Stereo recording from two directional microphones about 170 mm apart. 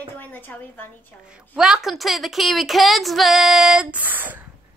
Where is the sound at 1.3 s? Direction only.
5° right (ahead or behind).